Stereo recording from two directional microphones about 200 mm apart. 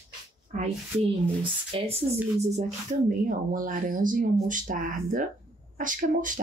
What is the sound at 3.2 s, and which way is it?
Speech, 45° right (ahead or behind).